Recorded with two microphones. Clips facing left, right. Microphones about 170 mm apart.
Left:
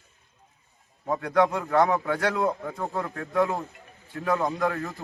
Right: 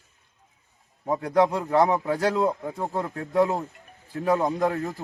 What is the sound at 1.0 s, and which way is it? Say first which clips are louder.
A man's voice: right 1 dB; 20° right (ahead or behind).